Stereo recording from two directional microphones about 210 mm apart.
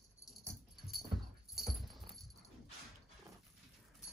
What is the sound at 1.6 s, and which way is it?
Dog, centre (ahead or behind).